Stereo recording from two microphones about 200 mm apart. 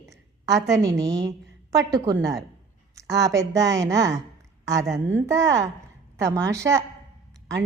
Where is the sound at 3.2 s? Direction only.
15° right (ahead or behind).